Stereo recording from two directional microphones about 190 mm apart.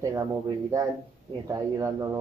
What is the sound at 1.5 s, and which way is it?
Speech, 20° right (ahead or behind).